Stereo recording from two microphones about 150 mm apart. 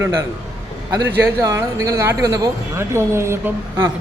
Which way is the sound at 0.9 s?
25° right (ahead or behind).